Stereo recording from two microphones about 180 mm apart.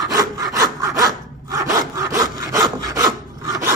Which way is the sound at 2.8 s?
20° right (ahead or behind).